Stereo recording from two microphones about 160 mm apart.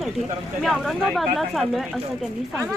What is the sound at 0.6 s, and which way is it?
Speech, centre (ahead or behind).